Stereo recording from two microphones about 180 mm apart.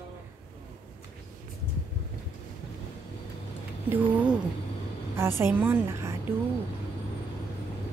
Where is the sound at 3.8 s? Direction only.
10° right (ahead or behind).